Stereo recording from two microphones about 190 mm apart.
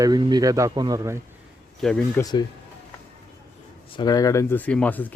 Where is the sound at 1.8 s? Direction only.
Centre (ahead or behind).